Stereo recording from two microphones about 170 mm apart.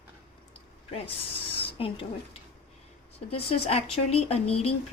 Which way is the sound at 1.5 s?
35° left (ahead or behind).